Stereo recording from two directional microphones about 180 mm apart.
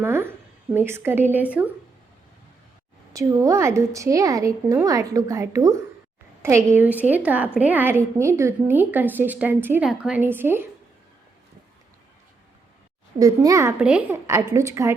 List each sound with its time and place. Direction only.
0.0 s a woman's voice: 10° right (ahead or behind)
3.1 s a woman's voice: 20° right (ahead or behind)
13.1 s a child's voice: 20° right (ahead or behind)
13.8 s a woman's voice: 5° right (ahead or behind)
14.3 s a woman's voice: 15° right (ahead or behind)